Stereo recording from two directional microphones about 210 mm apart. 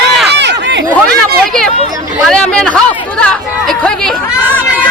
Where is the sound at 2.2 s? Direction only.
5° left (ahead or behind).